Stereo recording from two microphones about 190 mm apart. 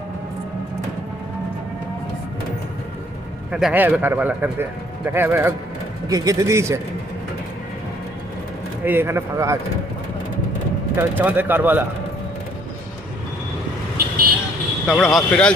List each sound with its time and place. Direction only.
3.5 s speech: 5° right (ahead or behind)
8.8 s speech: 10° right (ahead or behind)
10.9 s speech: 10° right (ahead or behind)
14.8 s speech: centre (ahead or behind)